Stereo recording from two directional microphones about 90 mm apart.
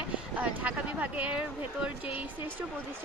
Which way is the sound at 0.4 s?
15° right (ahead or behind).